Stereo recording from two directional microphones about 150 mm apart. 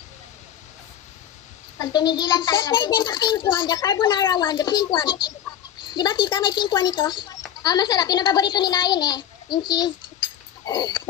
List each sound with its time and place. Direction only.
1.8 s a child's voice: 30° left (ahead or behind)
10.6 s pig: 30° left (ahead or behind)